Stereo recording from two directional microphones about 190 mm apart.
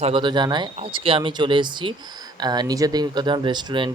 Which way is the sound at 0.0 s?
25° right (ahead or behind).